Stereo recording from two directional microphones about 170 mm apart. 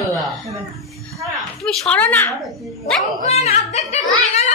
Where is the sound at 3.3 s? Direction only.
40° left (ahead or behind).